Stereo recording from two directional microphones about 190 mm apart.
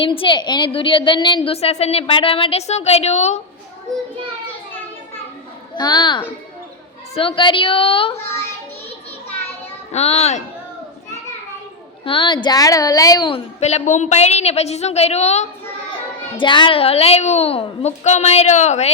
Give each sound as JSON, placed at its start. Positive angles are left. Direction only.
{"t": 0.0, "sound": "a woman's voice", "side_deg": 25}
{"t": 5.7, "sound": "a woman's voice", "side_deg": 20}
{"t": 8.1, "sound": "child singing", "side_deg": 15}
{"t": 9.9, "sound": "a woman's voice", "side_deg": 35}
{"t": 12.0, "sound": "a woman's voice", "side_deg": 25}
{"t": 13.6, "sound": "a woman's voice", "side_deg": 35}
{"t": 16.4, "sound": "a woman's voice", "side_deg": 25}